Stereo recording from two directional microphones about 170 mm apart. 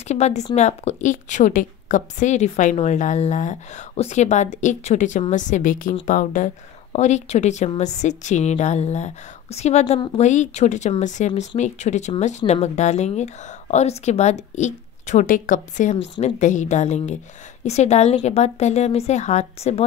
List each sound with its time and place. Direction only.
0.1 s a woman's voice: 40° left (ahead or behind)